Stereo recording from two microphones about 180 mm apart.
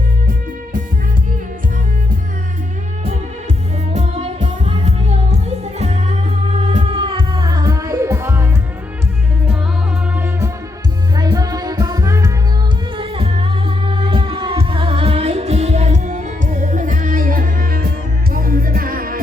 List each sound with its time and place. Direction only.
3.9 s music: 40° right (ahead or behind); by 8.4 s 15° right (ahead or behind)
10.2 s music: 10° right (ahead or behind)
13.0 s music: 30° right (ahead or behind); by 19.2 s 55° right (ahead or behind)